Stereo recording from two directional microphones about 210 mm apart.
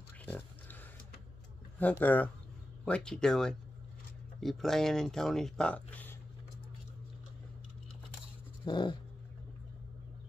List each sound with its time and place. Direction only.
0.2 s a sound: 10° left (ahead or behind)
1.8 s speech: 10° left (ahead or behind)
8.6 s dog: 20° left (ahead or behind)